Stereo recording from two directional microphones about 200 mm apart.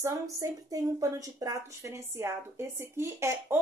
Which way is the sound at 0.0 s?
15° right (ahead or behind).